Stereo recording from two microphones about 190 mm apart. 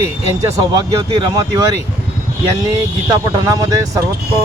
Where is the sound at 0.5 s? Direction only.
20° right (ahead or behind).